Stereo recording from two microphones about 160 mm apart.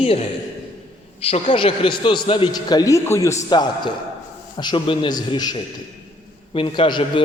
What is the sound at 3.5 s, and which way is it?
A man's voice, 30° left (ahead or behind).